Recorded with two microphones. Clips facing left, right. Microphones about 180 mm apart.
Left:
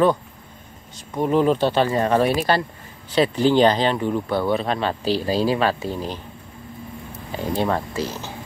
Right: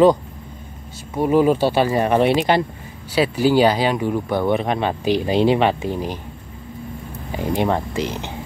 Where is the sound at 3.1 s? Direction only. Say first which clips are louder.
Right 1 dB; 10° right (ahead or behind).